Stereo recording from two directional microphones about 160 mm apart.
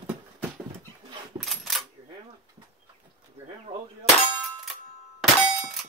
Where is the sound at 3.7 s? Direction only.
35° right (ahead or behind).